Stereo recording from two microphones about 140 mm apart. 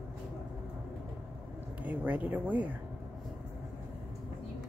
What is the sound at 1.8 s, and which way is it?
Speech, 10° right (ahead or behind).